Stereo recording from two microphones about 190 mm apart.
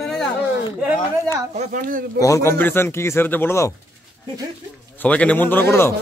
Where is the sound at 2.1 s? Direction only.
15° left (ahead or behind).